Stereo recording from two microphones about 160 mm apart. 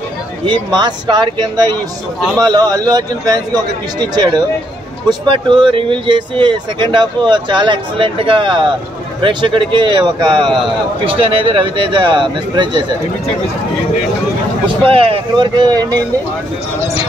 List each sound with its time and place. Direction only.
0.5 s speech: 25° right (ahead or behind)
2.1 s a man's voice: centre (ahead or behind)
2.4 s speech: 25° right (ahead or behind)
14.9 s speech: 35° right (ahead or behind)